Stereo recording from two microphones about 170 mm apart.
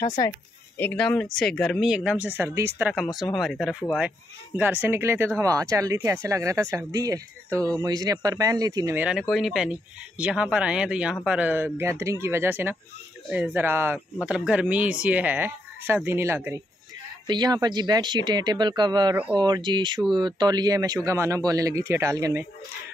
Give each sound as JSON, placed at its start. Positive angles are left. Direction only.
{"t": 0.7, "sound": "speech", "side_deg": 10}
{"t": 3.2, "sound": "speech", "side_deg": 0}
{"t": 9.3, "sound": "speech", "side_deg": 0}
{"t": 17.3, "sound": "speech", "side_deg": -25}